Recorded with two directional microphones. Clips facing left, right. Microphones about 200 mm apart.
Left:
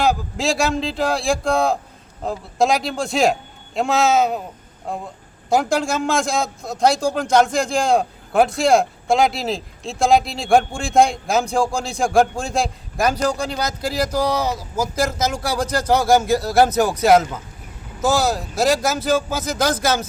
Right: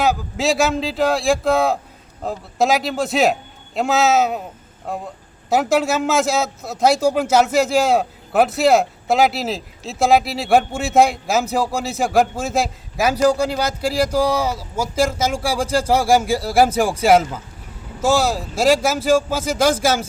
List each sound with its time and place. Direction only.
0.0 s a man's voice: centre (ahead or behind)
15.6 s speech: 30° right (ahead or behind)
16.0 s speech: 10° right (ahead or behind)
18.0 s speech: 30° right (ahead or behind)
19.3 s speech: 10° right (ahead or behind)